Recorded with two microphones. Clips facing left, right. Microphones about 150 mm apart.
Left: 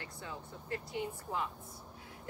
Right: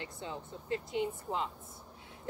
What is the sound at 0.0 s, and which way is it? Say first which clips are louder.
A woman's voice: right 4 dB; 20° right (ahead or behind).